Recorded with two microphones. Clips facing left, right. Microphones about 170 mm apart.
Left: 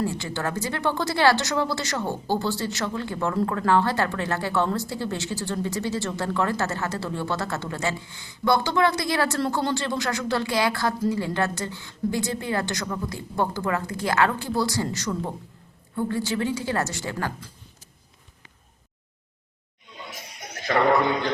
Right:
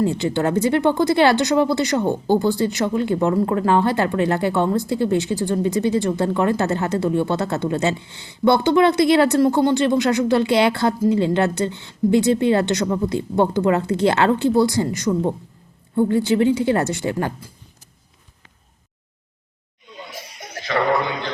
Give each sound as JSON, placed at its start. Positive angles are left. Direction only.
{"t": 0.0, "sound": "speech", "side_deg": -20}